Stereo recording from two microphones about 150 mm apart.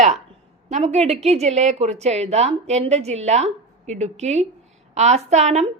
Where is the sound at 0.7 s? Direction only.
45° right (ahead or behind).